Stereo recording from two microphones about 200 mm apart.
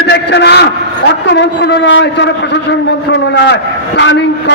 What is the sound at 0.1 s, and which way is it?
A man's voice, 60° left (ahead or behind).